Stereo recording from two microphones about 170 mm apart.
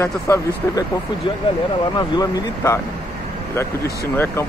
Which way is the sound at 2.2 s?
15° left (ahead or behind).